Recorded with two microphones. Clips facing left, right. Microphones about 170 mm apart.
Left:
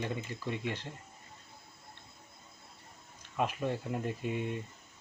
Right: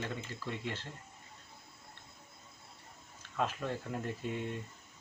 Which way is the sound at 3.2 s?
15° left (ahead or behind).